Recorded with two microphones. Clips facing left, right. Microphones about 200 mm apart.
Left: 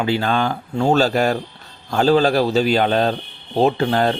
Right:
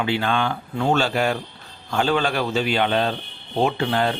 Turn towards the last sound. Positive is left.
turn(degrees=40)  # may be behind; listen again after turning